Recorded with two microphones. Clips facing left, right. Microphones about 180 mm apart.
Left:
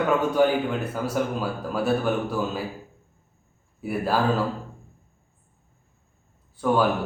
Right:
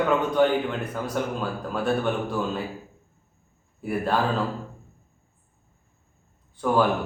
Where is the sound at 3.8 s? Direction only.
5° left (ahead or behind).